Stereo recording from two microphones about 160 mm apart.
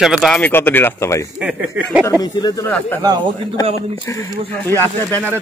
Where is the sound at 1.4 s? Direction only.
10° right (ahead or behind).